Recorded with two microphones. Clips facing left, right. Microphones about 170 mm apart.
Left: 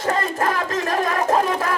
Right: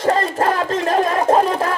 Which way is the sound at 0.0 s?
30° right (ahead or behind).